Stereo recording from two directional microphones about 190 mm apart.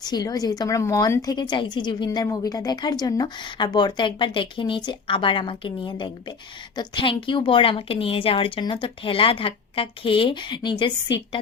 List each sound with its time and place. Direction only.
0.0 s a woman's voice: 20° left (ahead or behind)